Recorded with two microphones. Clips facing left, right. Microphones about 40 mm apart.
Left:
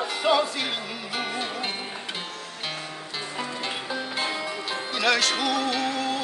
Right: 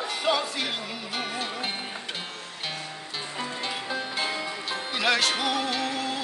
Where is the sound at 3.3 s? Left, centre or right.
Centre.